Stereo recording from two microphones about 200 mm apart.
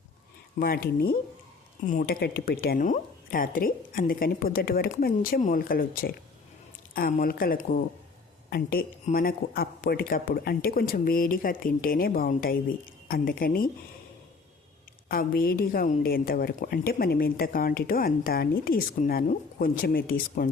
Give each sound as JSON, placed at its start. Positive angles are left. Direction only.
{"t": 0.6, "sound": "a woman's voice", "side_deg": 45}
{"t": 15.1, "sound": "a woman's voice", "side_deg": 45}